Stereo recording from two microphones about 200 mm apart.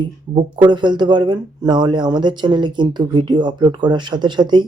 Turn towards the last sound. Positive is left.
turn(degrees=-20)  # may be behind; listen again after turning